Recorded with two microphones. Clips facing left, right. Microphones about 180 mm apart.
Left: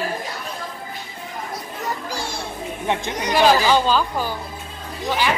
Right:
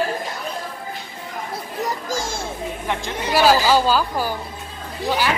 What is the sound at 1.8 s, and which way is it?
Music, 45° right (ahead or behind).